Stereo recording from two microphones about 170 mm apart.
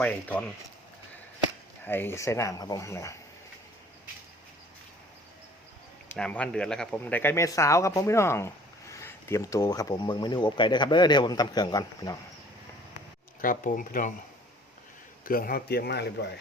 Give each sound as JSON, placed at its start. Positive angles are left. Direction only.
{"t": 0.0, "sound": "speech", "side_deg": 10}
{"t": 1.8, "sound": "speech", "side_deg": 10}
{"t": 6.1, "sound": "speech", "side_deg": 5}
{"t": 13.4, "sound": "speech", "side_deg": 55}
{"t": 15.2, "sound": "speech", "side_deg": 60}